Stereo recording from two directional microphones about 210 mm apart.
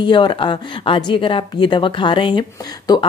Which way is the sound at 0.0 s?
20° left (ahead or behind).